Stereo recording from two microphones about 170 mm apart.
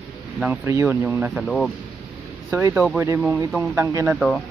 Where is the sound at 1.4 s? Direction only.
Centre (ahead or behind).